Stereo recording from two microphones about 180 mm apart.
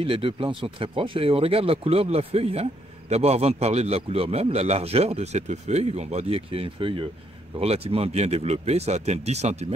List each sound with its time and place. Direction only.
0.0 s speech: 30° right (ahead or behind)